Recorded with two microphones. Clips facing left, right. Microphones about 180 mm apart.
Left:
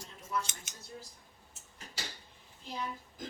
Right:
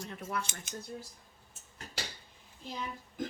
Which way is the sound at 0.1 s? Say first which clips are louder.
Left 2 dB; 65° right (ahead or behind).